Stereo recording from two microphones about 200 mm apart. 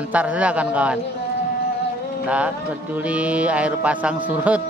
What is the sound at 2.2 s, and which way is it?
Speech, 5° right (ahead or behind).